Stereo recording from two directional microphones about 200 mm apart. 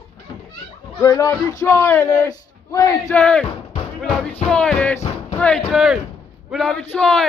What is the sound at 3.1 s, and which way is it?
Speech, 5° left (ahead or behind).